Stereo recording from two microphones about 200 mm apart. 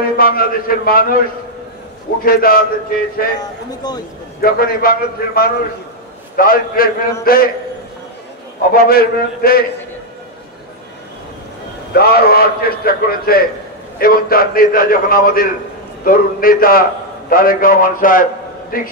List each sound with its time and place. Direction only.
0.0 s a man's voice: 50° left (ahead or behind)
2.2 s a man's voice: 45° left (ahead or behind)
3.3 s a man's voice: 20° left (ahead or behind)
4.4 s a man's voice: 50° left (ahead or behind)
8.7 s a man's voice: 50° left (ahead or behind)
11.9 s a man's voice: 50° left (ahead or behind)